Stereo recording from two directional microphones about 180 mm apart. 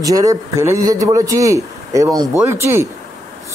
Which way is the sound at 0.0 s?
20° right (ahead or behind).